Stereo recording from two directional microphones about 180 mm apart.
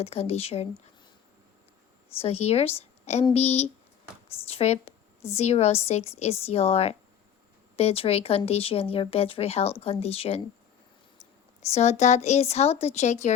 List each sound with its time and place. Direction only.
0.0 s a woman's voice: 35° left (ahead or behind)
2.0 s a woman's voice: 35° left (ahead or behind)
11.6 s a woman's voice: 35° left (ahead or behind)